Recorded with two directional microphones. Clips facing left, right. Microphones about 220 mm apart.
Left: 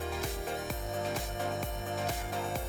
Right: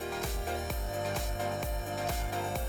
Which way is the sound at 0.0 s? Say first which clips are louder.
Even; centre (ahead or behind).